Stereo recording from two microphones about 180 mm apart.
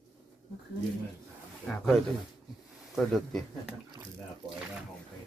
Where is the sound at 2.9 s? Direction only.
Centre (ahead or behind).